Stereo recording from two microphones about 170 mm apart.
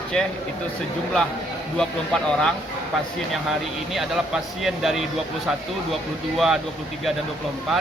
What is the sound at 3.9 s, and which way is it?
Speech, centre (ahead or behind).